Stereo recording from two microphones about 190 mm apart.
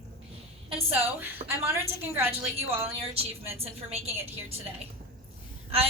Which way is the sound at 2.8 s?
30° right (ahead or behind).